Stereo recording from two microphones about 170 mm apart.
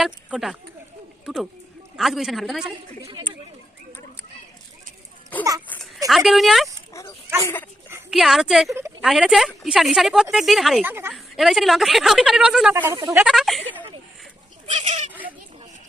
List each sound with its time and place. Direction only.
0.0 s a woman's voice: centre (ahead or behind)
5.4 s wail: 20° right (ahead or behind)
5.6 s a sound: 10° left (ahead or behind)
6.1 s a woman's voice: centre (ahead or behind)
7.4 s speech: 10° left (ahead or behind)
8.1 s a woman's voice: centre (ahead or behind)
8.7 s a woman's voice: 15° right (ahead or behind)
9.0 s a woman's voice: centre (ahead or behind)
10.8 s a woman's voice: 15° right (ahead or behind)
11.1 s a woman's voice: centre (ahead or behind)
12.7 s a woman's voice: 15° right (ahead or behind)
13.1 s a woman's voice: 5° right (ahead or behind)
14.7 s goat: 40° right (ahead or behind)